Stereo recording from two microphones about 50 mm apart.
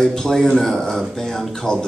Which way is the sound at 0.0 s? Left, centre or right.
Centre.